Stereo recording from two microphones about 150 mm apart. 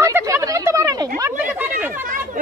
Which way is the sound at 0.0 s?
20° right (ahead or behind).